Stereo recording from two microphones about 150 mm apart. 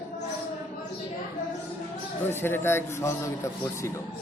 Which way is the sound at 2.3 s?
15° left (ahead or behind).